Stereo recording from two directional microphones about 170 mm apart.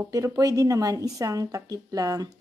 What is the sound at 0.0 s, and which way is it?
A woman's voice, 20° right (ahead or behind).